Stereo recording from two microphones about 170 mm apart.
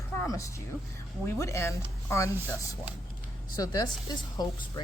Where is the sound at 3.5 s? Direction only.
20° left (ahead or behind).